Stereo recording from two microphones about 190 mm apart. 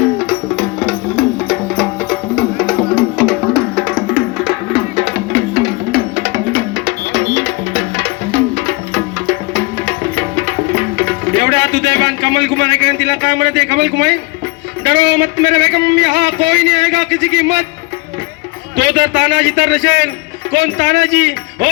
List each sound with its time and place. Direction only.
0.2 s music: 5° right (ahead or behind)
4.9 s music: 55° right (ahead or behind)
14.8 s speech: 60° right (ahead or behind)
18.8 s speech: 65° right (ahead or behind)